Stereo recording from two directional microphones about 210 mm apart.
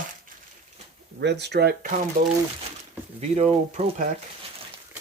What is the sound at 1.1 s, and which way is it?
Speech, 55° right (ahead or behind).